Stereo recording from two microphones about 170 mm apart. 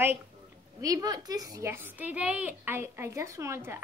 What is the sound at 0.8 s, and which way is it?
A woman's voice, 20° right (ahead or behind).